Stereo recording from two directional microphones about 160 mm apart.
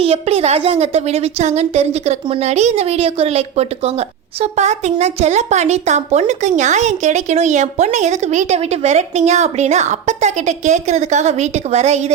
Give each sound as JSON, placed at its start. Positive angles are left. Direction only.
{"t": 0.0, "sound": "a woman's voice", "side_deg": -40}